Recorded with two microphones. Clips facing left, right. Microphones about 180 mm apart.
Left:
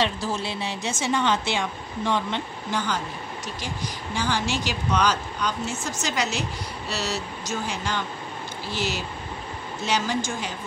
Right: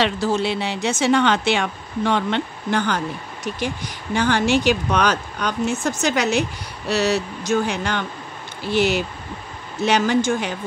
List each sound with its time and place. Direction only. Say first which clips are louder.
0.0 s a woman's voice: right 6 dB; 75° right (ahead or behind)